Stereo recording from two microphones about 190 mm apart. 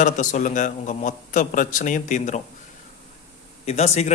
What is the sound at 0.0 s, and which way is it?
A man's voice, 40° left (ahead or behind).